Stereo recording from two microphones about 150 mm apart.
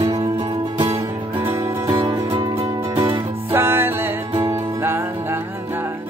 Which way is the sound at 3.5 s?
15° right (ahead or behind).